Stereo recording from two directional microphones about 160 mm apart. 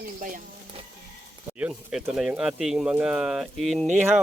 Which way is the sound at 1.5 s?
5° right (ahead or behind).